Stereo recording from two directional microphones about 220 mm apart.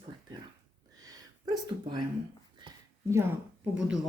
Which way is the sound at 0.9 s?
15° right (ahead or behind).